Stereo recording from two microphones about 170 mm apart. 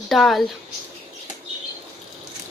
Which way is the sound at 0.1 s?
Centre (ahead or behind).